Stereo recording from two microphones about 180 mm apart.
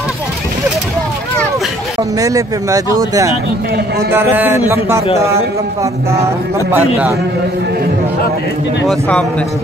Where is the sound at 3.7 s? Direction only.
65° right (ahead or behind).